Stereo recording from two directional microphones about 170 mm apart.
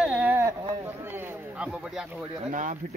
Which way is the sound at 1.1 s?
5° right (ahead or behind).